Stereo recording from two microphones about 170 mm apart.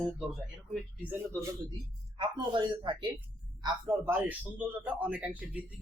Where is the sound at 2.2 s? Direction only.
30° right (ahead or behind).